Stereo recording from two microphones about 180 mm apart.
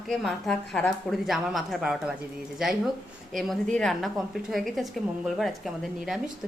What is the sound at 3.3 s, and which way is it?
A woman's voice, centre (ahead or behind).